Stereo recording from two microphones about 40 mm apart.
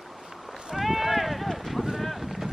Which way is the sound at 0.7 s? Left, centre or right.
Centre.